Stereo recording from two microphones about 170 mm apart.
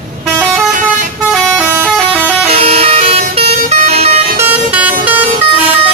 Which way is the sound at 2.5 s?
35° right (ahead or behind).